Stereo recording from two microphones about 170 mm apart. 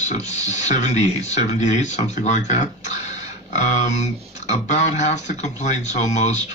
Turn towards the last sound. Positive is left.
turn(degrees=40)  # may be behind; listen again after turning